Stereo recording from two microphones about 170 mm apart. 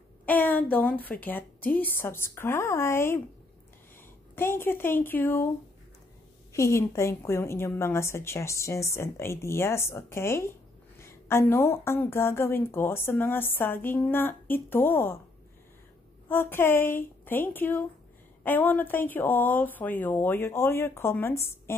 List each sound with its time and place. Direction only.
0.2 s a sound: 10° left (ahead or behind)
0.7 s a woman's voice: 10° left (ahead or behind)
4.4 s a woman's voice: 15° left (ahead or behind)
6.5 s a woman's voice: 15° left (ahead or behind)
16.3 s a woman's voice: 15° left (ahead or behind)